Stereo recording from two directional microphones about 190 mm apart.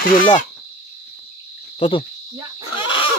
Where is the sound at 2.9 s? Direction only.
25° left (ahead or behind).